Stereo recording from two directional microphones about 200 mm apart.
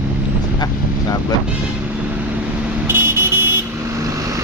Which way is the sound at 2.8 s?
10° right (ahead or behind).